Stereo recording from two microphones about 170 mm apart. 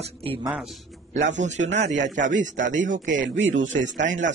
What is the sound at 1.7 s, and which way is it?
Speech, 90° right.